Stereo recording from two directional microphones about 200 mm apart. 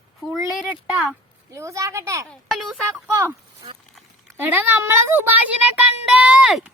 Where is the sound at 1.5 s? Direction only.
15° right (ahead or behind).